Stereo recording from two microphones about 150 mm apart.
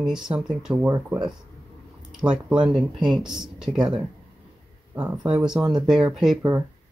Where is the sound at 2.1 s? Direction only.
5° right (ahead or behind).